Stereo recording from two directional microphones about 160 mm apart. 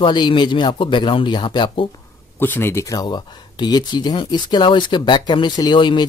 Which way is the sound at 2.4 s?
15° left (ahead or behind).